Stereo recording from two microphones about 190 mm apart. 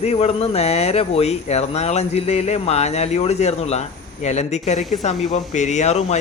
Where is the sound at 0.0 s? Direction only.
35° left (ahead or behind).